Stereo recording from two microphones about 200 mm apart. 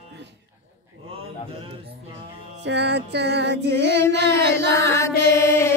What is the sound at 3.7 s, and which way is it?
Child singing, 60° right (ahead or behind).